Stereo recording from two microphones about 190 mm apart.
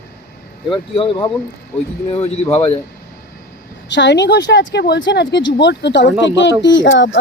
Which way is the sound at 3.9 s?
65° left (ahead or behind).